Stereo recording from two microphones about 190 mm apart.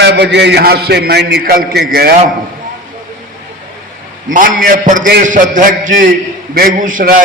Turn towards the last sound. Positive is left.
turn(degrees=-45)  # may be behind; listen again after turning